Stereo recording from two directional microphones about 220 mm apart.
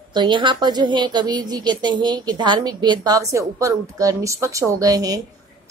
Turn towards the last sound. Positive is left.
turn(degrees=-15)  # may be behind; listen again after turning